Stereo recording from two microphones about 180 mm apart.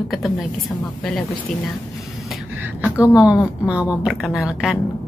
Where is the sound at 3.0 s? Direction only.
5° right (ahead or behind).